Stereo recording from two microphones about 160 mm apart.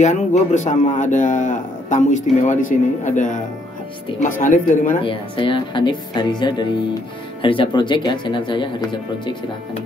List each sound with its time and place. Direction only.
0.0 s a man's voice: 45° left (ahead or behind)
5.0 s speech: 35° left (ahead or behind)